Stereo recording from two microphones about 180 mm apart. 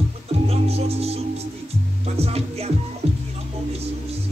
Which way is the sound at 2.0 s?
35° right (ahead or behind).